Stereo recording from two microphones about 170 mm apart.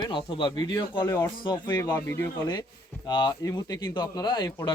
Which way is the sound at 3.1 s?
25° left (ahead or behind).